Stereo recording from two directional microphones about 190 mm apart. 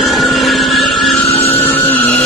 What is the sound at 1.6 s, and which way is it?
Vehicle, 10° left (ahead or behind).